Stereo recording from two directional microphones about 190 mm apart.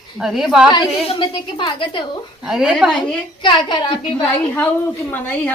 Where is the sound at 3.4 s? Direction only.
25° left (ahead or behind).